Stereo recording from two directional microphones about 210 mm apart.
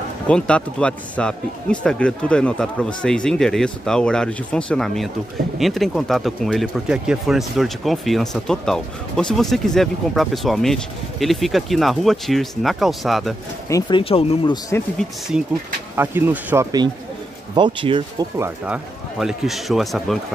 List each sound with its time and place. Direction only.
0.3 s speech: 5° left (ahead or behind)
13.7 s speech: 20° left (ahead or behind)
15.0 s speech: centre (ahead or behind)
17.6 s speech: 25° right (ahead or behind)
18.4 s speech: 5° right (ahead or behind)